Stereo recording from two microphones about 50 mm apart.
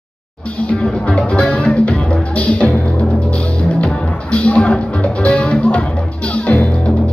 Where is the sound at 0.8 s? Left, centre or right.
Centre.